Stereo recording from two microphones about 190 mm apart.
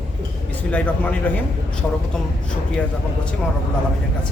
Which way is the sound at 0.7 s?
5° left (ahead or behind).